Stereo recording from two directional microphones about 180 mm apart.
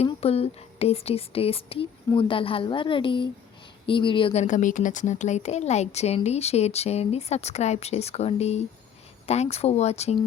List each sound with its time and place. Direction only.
0.0 s speech: 35° left (ahead or behind)